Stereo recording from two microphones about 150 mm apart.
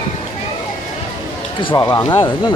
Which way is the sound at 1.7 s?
20° left (ahead or behind).